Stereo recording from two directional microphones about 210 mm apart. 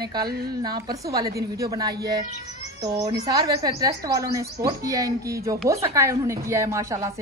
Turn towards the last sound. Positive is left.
turn(degrees=-15)  # may be behind; listen again after turning